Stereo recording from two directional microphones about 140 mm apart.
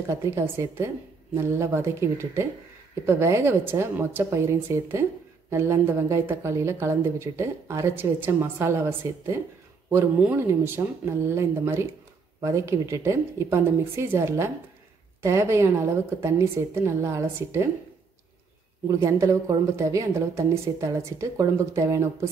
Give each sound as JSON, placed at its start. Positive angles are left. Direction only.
{"t": 0.1, "sound": "a woman's voice", "side_deg": -20}
{"t": 18.9, "sound": "a woman's voice", "side_deg": -20}